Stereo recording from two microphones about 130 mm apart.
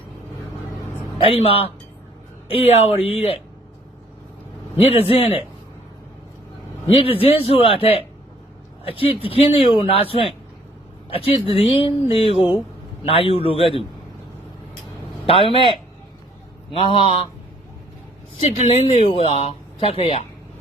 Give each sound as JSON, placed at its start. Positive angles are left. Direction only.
{"t": 1.2, "sound": "speech", "side_deg": 45}
{"t": 4.8, "sound": "speech", "side_deg": 50}
{"t": 6.8, "sound": "speech", "side_deg": 45}
{"t": 11.4, "sound": "speech", "side_deg": 45}
{"t": 15.3, "sound": "speech", "side_deg": 45}
{"t": 16.7, "sound": "speech", "side_deg": 45}
{"t": 18.3, "sound": "speech", "side_deg": 60}